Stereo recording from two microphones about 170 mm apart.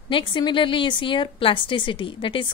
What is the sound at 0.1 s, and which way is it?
Speech, 30° left (ahead or behind).